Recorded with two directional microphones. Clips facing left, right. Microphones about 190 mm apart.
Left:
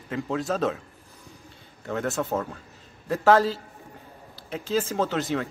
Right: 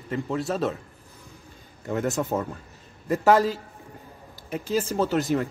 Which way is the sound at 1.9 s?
10° right (ahead or behind).